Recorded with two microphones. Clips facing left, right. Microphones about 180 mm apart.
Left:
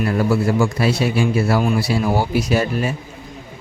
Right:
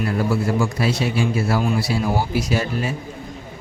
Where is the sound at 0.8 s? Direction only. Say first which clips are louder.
Left 3 dB; 65° left (ahead or behind).